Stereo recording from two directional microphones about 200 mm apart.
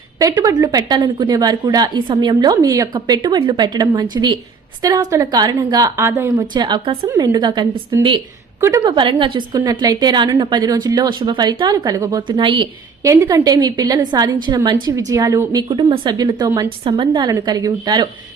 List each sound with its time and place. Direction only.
0.2 s a woman's voice: 20° right (ahead or behind)